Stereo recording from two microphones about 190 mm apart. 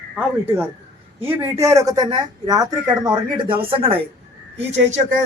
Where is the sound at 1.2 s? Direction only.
15° right (ahead or behind); by 4.0 s 30° right (ahead or behind).